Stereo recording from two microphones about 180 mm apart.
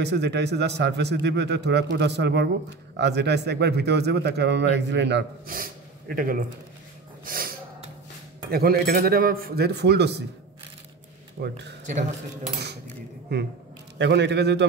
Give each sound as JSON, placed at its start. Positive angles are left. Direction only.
{"t": 0.0, "sound": "speech", "side_deg": -70}
{"t": 7.2, "sound": "snort", "side_deg": -55}
{"t": 8.5, "sound": "a man's voice", "side_deg": -60}
{"t": 11.3, "sound": "speech", "side_deg": -75}
{"t": 13.3, "sound": "speech", "side_deg": -70}